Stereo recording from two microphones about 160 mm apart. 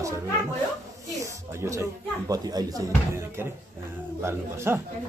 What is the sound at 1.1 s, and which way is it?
Speech, 20° right (ahead or behind).